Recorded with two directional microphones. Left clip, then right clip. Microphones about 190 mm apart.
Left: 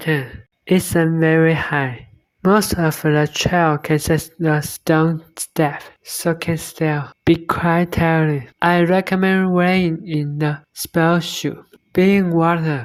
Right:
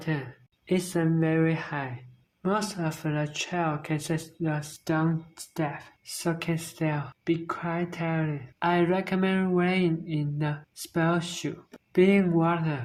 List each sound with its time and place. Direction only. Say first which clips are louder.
0.0 s speech: left 12 dB; 35° left (ahead or behind)